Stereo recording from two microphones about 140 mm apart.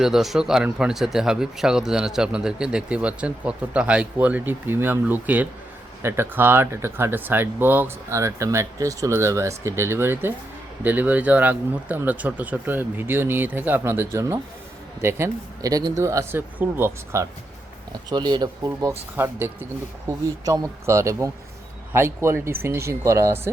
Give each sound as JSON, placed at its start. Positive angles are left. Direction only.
{"t": 0.0, "sound": "speech", "side_deg": 0}
{"t": 18.1, "sound": "speech", "side_deg": -30}
{"t": 19.1, "sound": "speech", "side_deg": -15}